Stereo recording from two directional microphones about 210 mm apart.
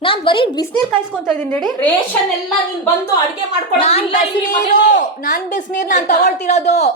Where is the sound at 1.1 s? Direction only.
Centre (ahead or behind).